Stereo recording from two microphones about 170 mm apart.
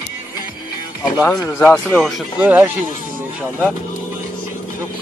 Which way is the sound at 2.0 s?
Centre (ahead or behind).